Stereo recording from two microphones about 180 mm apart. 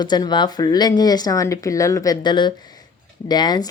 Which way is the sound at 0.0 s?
25° left (ahead or behind).